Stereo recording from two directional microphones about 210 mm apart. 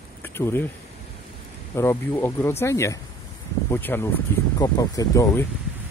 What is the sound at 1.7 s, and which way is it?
Speech, 10° left (ahead or behind).